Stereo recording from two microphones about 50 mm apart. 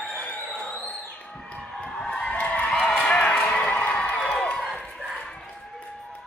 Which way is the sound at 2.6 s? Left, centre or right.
Centre.